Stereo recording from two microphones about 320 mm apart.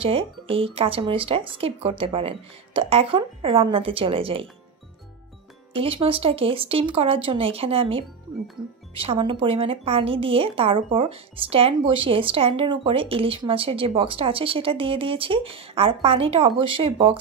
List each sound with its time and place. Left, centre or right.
0.0 s a woman's voice: centre
5.7 s a woman's voice: centre